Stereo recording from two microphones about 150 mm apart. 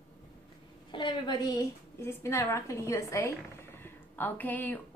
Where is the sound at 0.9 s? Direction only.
30° left (ahead or behind).